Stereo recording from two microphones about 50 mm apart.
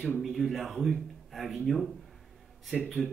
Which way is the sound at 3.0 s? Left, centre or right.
Centre.